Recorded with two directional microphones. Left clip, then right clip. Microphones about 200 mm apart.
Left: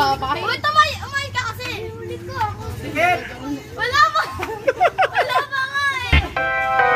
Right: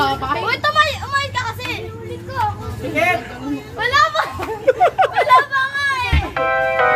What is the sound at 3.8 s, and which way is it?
Children playing, 10° right (ahead or behind).